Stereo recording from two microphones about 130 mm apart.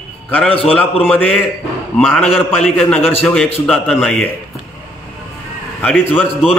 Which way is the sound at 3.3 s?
5° left (ahead or behind).